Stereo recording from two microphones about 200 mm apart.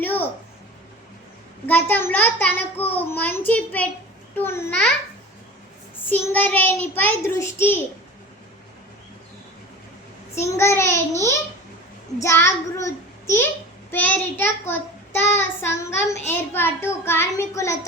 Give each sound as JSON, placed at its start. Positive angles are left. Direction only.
{"t": 0.0, "sound": "a sound", "side_deg": 10}
{"t": 1.6, "sound": "child singing", "side_deg": 10}
{"t": 6.1, "sound": "child singing", "side_deg": 10}
{"t": 10.3, "sound": "child singing", "side_deg": 15}
{"t": 12.2, "sound": "child singing", "side_deg": 15}